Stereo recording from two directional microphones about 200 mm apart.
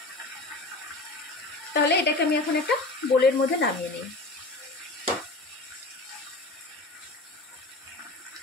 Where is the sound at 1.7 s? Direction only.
55° left (ahead or behind).